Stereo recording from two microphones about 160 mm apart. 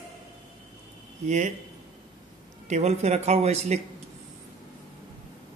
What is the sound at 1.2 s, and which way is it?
Speech, 50° right (ahead or behind).